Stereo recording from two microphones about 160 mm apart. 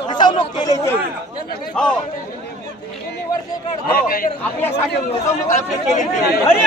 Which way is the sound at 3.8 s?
65° left (ahead or behind).